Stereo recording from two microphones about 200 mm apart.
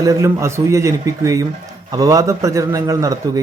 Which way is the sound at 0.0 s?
15° right (ahead or behind).